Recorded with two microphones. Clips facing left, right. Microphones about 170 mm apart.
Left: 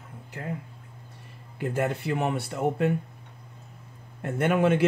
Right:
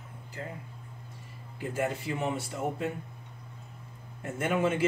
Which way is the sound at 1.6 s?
65° left (ahead or behind).